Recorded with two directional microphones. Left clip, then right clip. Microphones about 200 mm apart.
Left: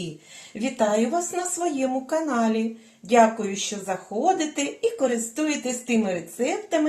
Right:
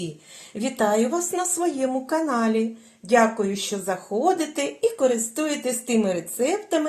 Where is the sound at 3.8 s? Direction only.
40° right (ahead or behind).